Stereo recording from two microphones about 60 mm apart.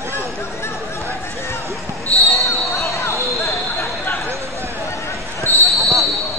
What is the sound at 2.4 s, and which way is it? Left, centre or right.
Basketball bounce, left.